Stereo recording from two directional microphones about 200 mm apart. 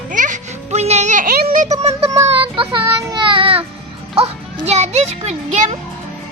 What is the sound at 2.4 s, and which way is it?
A child's voice, 25° right (ahead or behind).